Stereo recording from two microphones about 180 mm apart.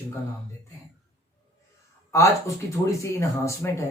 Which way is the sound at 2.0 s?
15° left (ahead or behind).